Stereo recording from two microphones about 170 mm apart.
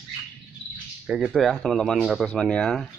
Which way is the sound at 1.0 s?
5° right (ahead or behind).